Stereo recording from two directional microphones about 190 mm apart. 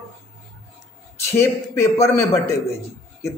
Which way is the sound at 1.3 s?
15° left (ahead or behind).